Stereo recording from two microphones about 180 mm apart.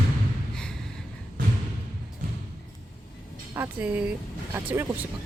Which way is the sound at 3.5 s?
10° right (ahead or behind).